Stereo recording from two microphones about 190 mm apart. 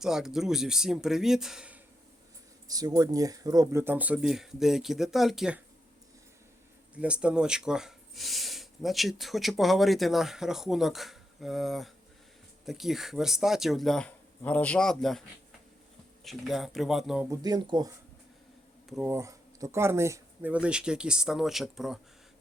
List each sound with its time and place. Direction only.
0.0 s speech: 5° right (ahead or behind)
2.6 s speech: 20° right (ahead or behind); by 5.6 s 5° right (ahead or behind)
6.9 s speech: 5° right (ahead or behind)
16.2 s speech: centre (ahead or behind)
17.2 s speech: 20° right (ahead or behind)
18.9 s speech: centre (ahead or behind)
19.1 s speech: 15° right (ahead or behind)